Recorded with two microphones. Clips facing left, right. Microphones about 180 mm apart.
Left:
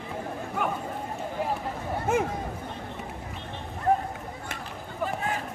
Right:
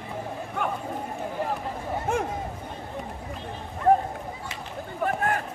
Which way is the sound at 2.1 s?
5° left (ahead or behind).